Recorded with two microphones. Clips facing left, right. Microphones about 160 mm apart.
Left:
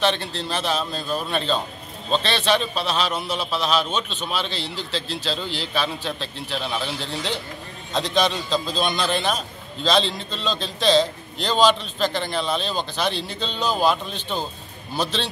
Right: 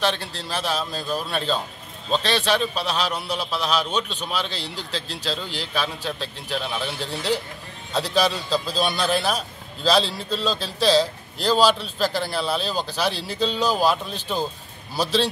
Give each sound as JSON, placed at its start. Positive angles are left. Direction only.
{"t": 0.0, "sound": "a man's voice", "side_deg": -10}